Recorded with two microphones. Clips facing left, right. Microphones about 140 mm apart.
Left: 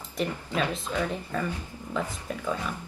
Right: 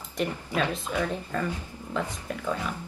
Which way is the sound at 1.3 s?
10° left (ahead or behind).